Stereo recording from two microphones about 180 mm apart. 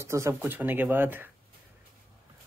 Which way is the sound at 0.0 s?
15° right (ahead or behind).